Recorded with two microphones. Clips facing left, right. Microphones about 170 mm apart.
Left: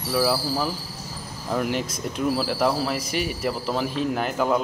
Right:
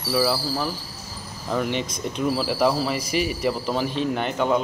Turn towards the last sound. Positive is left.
turn(degrees=0)  # may be behind; listen again after turning